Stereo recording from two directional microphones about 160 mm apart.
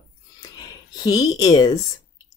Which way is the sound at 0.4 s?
25° left (ahead or behind).